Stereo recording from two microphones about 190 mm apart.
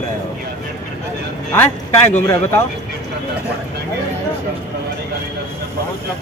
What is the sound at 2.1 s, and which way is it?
Speech, 10° left (ahead or behind).